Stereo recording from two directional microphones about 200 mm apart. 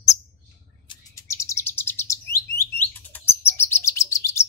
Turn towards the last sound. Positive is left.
turn(degrees=15)  # may be behind; listen again after turning